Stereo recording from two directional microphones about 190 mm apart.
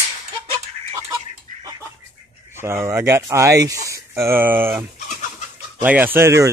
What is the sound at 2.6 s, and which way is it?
Speech, 15° right (ahead or behind).